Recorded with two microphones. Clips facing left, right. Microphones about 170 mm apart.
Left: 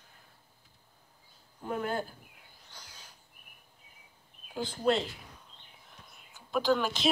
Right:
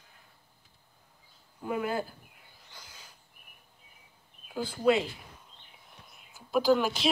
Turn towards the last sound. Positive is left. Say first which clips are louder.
# right 3 dB
turn(degrees=-5)  # may be behind; listen again after turning